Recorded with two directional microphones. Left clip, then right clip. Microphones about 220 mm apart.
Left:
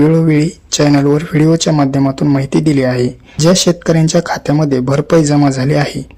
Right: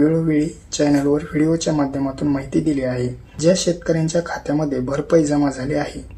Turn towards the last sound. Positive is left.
turn(degrees=40)  # may be behind; listen again after turning